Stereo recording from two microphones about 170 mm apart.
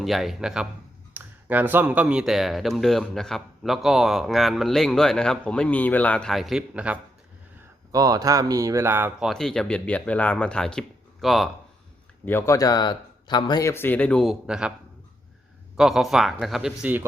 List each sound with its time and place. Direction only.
0.0 s speech: centre (ahead or behind)
7.9 s speech: 20° right (ahead or behind)
9.3 s speech: centre (ahead or behind)
12.2 s speech: 15° left (ahead or behind); by 14.7 s 5° right (ahead or behind)
15.8 s speech: centre (ahead or behind)